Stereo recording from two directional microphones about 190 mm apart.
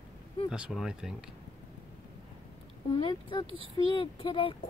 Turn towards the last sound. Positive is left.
turn(degrees=25)  # may be behind; listen again after turning